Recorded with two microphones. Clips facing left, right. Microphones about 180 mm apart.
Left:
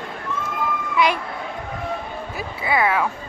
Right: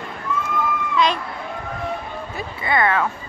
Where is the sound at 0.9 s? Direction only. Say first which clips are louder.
Even; 10° left (ahead or behind).